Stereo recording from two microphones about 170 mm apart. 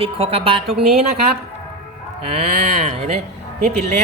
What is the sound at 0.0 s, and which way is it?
Speech, 35° right (ahead or behind).